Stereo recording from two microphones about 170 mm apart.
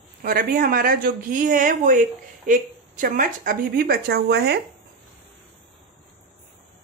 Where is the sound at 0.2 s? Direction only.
55° right (ahead or behind).